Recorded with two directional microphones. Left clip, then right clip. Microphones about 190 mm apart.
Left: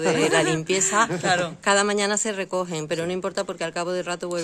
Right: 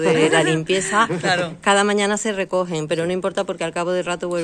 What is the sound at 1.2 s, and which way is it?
Speech, 45° left (ahead or behind).